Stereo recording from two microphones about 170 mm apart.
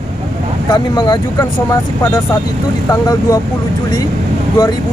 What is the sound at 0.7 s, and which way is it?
Speech, 25° left (ahead or behind).